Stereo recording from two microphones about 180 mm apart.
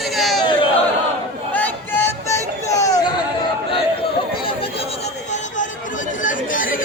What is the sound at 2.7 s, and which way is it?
Chatter, 20° left (ahead or behind).